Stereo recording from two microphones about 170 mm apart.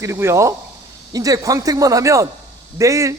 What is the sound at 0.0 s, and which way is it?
A man's voice, 15° right (ahead or behind).